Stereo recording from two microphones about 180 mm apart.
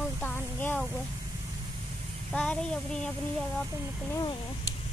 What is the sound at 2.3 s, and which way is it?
Speech, 5° left (ahead or behind).